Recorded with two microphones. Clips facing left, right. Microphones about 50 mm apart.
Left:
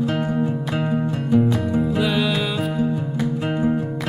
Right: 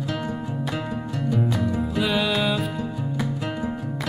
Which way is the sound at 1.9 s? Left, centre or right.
Centre.